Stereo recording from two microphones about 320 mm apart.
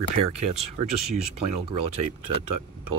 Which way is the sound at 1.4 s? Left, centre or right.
Right.